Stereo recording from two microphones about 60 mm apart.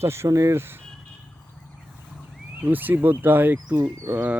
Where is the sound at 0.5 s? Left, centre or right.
Right.